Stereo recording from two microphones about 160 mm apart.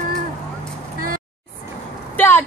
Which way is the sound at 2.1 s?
10° left (ahead or behind).